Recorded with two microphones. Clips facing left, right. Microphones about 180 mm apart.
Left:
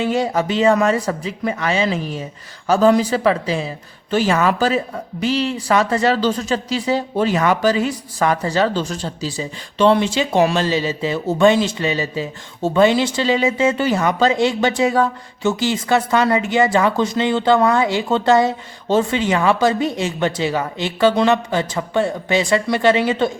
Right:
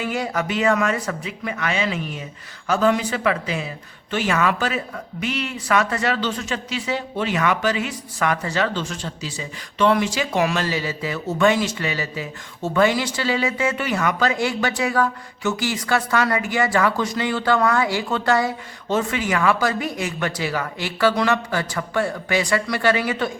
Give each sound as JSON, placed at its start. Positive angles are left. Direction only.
{"t": 0.0, "sound": "speech", "side_deg": 25}